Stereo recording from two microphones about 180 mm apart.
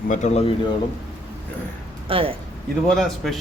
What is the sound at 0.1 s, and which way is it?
Speech, 40° left (ahead or behind).